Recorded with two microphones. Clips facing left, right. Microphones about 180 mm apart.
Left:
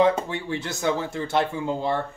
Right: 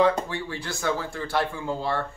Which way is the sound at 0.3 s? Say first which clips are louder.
Left 3 dB; 20° left (ahead or behind).